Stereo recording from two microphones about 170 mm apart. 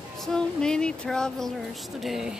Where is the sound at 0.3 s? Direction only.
5° left (ahead or behind).